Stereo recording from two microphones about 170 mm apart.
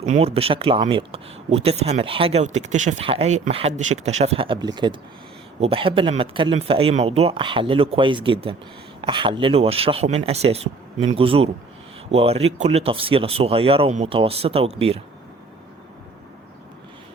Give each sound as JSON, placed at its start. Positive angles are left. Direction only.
{"t": 0.0, "sound": "speech", "side_deg": -40}